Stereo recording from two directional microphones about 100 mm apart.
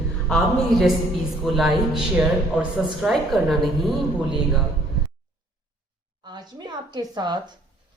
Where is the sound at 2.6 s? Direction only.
10° right (ahead or behind).